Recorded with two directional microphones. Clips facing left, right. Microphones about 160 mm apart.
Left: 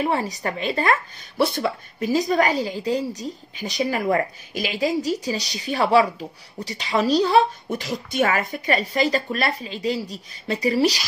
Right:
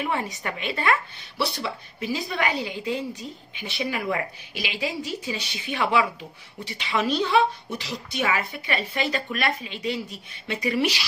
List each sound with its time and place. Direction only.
0.0 s a woman's voice: 35° left (ahead or behind)
1.4 s a woman's voice: 50° left (ahead or behind)